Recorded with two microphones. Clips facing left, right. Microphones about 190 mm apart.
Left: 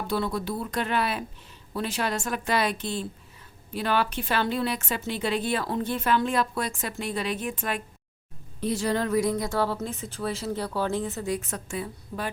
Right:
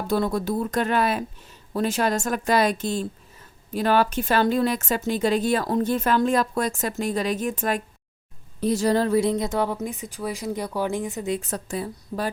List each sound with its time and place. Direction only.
0.1 s a woman's voice: 45° right (ahead or behind); by 11.3 s 15° right (ahead or behind)
11.3 s a woman's voice: 35° right (ahead or behind)